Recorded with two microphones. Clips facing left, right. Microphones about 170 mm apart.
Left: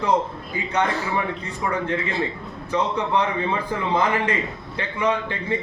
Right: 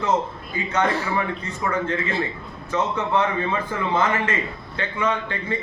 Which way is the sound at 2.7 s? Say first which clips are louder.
Even; 15° left (ahead or behind).